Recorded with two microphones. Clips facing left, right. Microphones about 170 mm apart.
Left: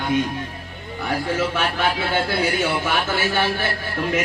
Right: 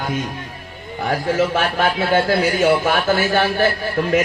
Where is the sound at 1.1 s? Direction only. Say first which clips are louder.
Right 4 dB; 45° right (ahead or behind).